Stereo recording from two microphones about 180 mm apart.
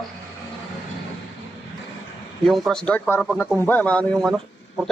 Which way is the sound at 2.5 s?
5° left (ahead or behind).